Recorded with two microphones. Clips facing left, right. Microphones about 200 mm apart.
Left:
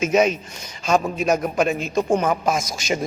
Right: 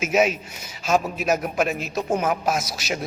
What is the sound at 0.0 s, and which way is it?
A man's voice, 5° right (ahead or behind).